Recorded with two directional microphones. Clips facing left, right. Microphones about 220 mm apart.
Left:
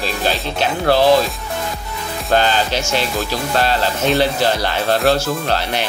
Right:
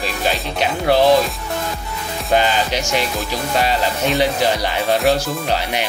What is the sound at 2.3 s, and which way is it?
Speech, 15° right (ahead or behind).